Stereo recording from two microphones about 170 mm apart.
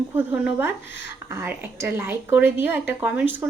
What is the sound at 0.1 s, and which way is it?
Speech, 10° right (ahead or behind).